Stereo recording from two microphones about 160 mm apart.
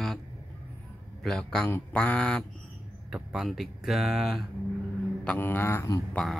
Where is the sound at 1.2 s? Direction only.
5° left (ahead or behind).